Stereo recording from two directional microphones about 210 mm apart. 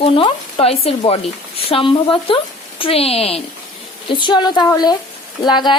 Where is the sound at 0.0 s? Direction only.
25° left (ahead or behind).